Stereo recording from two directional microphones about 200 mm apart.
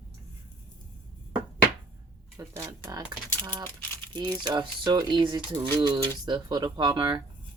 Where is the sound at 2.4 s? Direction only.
15° right (ahead or behind).